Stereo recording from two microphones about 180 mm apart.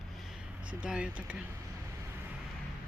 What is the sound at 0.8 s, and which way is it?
Speech, 5° right (ahead or behind).